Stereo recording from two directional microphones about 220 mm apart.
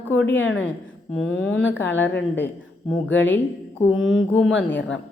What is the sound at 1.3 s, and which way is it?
Speech, 60° left (ahead or behind).